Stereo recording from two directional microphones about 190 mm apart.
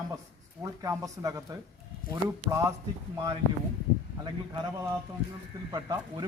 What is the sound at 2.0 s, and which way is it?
Speech, 50° left (ahead or behind).